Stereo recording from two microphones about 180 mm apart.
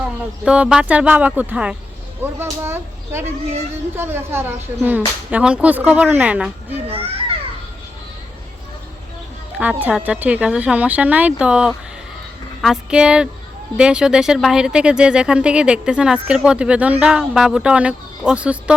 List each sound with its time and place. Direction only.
0.4 s speech: 5° right (ahead or behind)
6.8 s a child's voice: 30° right (ahead or behind)
9.6 s speech: 10° right (ahead or behind)